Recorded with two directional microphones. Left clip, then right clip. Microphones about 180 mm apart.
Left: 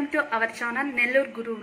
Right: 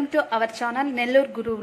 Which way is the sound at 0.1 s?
35° right (ahead or behind).